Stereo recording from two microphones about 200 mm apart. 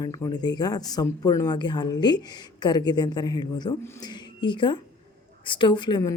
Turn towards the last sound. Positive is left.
turn(degrees=20)  # may be behind; listen again after turning